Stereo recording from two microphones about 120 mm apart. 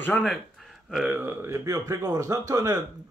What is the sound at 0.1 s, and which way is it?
Speech, 10° left (ahead or behind).